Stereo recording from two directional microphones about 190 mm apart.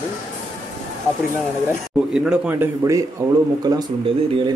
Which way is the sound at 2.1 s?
5° right (ahead or behind).